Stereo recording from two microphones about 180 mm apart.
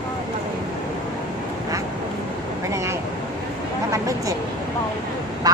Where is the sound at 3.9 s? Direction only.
15° right (ahead or behind).